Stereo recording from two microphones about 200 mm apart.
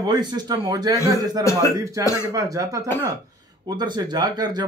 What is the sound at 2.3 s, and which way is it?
Speech, 15° right (ahead or behind).